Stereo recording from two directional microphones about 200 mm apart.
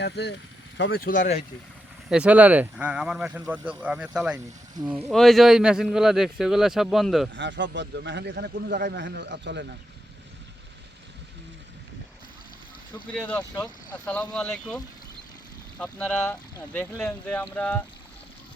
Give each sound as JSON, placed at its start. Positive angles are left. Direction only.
{"t": 0.0, "sound": "speech", "side_deg": 60}
{"t": 2.0, "sound": "speech", "side_deg": -5}
{"t": 7.3, "sound": "speech", "side_deg": -65}
{"t": 13.2, "sound": "speech", "side_deg": 10}
{"t": 15.8, "sound": "speech", "side_deg": 5}